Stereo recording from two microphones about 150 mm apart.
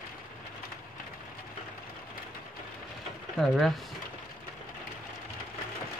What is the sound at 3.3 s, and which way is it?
Speech, centre (ahead or behind).